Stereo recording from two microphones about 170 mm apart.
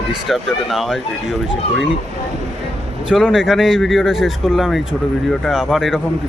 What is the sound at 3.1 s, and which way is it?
Speech, 5° right (ahead or behind).